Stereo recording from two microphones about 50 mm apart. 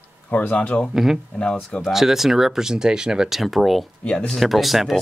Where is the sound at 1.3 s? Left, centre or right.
Centre.